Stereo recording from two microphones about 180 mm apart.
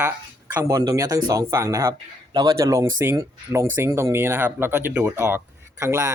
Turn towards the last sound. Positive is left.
turn(degrees=-15)  # may be behind; listen again after turning